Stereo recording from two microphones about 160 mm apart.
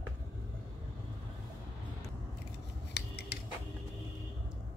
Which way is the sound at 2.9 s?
90° left.